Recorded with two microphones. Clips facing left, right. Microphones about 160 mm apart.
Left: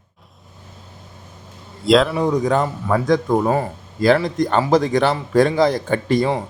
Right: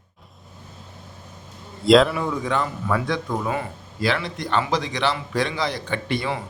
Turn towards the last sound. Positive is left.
turn(degrees=40)  # may be behind; listen again after turning